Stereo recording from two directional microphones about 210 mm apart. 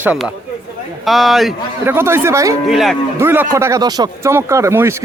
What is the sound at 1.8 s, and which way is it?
Speech, 10° right (ahead or behind).